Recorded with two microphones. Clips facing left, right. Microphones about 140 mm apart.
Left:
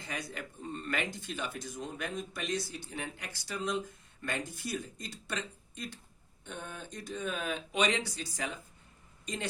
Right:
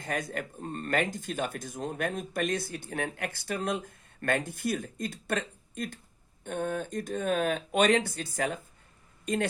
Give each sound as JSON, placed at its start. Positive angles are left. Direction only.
{"t": 0.0, "sound": "speech", "side_deg": -50}